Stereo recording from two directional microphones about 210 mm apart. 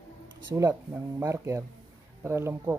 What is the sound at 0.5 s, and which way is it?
Speech, 10° right (ahead or behind).